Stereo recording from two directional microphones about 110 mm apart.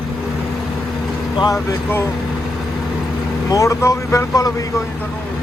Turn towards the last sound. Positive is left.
turn(degrees=30)  # may be behind; listen again after turning